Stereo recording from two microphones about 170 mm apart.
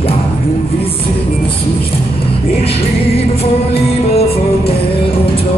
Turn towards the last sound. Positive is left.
turn(degrees=35)  # may be behind; listen again after turning